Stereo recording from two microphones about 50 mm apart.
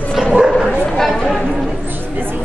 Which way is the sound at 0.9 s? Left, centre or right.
Centre.